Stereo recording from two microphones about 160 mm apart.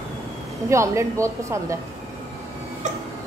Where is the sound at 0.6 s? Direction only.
20° right (ahead or behind).